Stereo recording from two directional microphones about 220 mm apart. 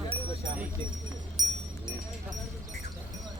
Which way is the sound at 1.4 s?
15° right (ahead or behind).